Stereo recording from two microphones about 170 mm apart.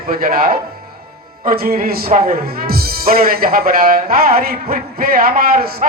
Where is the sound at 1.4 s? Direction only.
60° right (ahead or behind).